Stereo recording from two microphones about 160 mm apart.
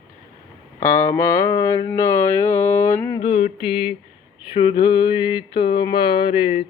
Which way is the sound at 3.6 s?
35° left (ahead or behind).